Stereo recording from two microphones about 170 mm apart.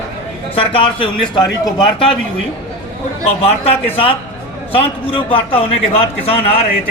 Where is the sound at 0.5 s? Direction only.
30° left (ahead or behind).